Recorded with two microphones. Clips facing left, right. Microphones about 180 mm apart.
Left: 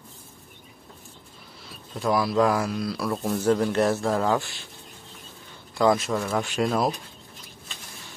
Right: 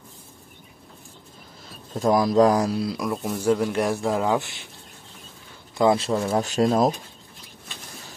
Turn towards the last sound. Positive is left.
turn(degrees=-40)  # may be behind; listen again after turning